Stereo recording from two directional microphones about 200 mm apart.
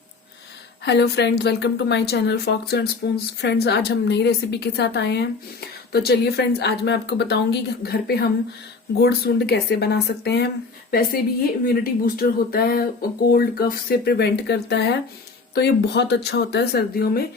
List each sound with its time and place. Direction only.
0.9 s a woman's voice: 60° left (ahead or behind)